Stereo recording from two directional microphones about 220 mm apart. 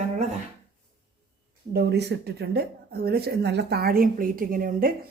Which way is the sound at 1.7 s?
45° right (ahead or behind).